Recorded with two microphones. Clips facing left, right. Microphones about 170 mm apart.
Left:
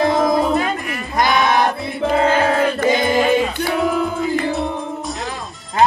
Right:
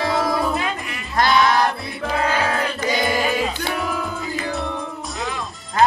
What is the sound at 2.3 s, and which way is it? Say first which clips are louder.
Music: left 6 dB; 50° left (ahead or behind).